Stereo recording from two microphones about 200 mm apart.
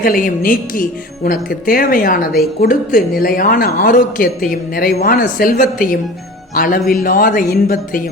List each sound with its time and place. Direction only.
0.0 s speech: 45° left (ahead or behind)